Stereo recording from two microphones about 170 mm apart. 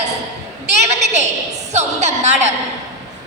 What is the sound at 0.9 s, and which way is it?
A woman's voice, 40° right (ahead or behind).